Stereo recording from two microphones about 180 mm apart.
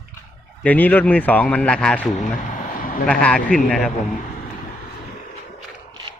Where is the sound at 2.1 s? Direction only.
45° left (ahead or behind).